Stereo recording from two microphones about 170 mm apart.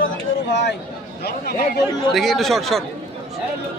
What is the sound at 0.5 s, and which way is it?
Speech, 85° left.